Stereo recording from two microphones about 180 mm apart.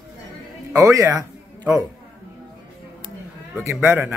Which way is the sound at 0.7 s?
15° right (ahead or behind).